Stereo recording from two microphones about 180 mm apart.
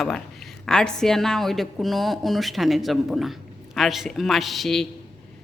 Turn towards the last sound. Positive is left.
turn(degrees=0)  # may be behind; listen again after turning